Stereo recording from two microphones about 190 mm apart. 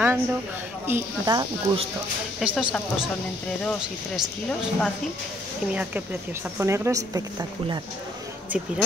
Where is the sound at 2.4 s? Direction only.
Centre (ahead or behind).